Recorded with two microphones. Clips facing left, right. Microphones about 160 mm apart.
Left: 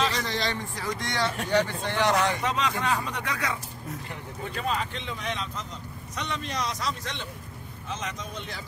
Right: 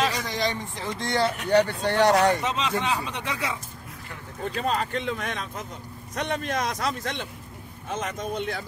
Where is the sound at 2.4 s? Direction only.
25° right (ahead or behind).